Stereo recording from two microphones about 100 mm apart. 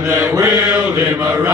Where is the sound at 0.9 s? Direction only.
30° right (ahead or behind).